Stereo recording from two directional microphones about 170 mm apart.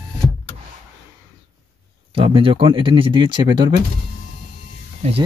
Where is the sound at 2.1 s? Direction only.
35° right (ahead or behind).